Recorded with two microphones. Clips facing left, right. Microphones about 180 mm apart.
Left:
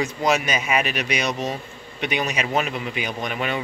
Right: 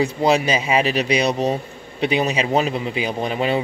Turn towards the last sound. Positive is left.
turn(degrees=-30)  # may be behind; listen again after turning